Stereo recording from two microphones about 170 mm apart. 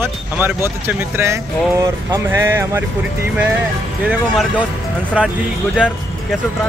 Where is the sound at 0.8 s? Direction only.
15° right (ahead or behind).